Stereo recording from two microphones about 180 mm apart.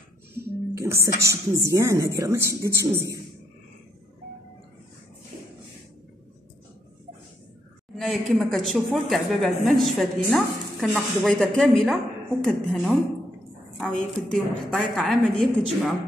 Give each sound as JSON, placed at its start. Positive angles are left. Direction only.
{"t": 0.7, "sound": "a woman's voice", "side_deg": -15}
{"t": 7.9, "sound": "a sound", "side_deg": 0}
{"t": 8.4, "sound": "a woman's voice", "side_deg": 0}